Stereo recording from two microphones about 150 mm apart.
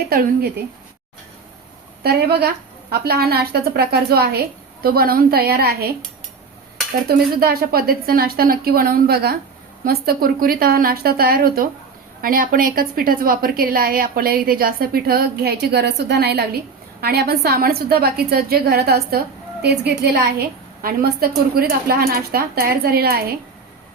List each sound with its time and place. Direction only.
0.1 s a woman's voice: 90° right
2.0 s a woman's voice: 90° right
7.1 s a woman's voice: 90° right
12.2 s a woman's voice: 70° right (ahead or behind); by 23.3 s 90° right